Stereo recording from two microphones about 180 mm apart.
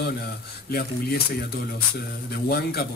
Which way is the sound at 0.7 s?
55° left (ahead or behind).